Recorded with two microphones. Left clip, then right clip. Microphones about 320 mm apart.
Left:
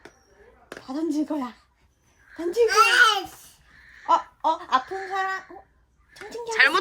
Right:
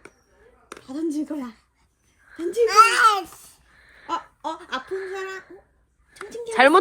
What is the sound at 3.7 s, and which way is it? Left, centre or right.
Gasp, centre.